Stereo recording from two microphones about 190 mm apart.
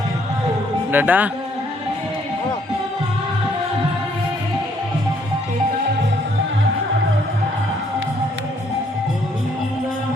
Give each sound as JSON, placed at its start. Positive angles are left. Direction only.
{"t": 0.9, "sound": "speech", "side_deg": -10}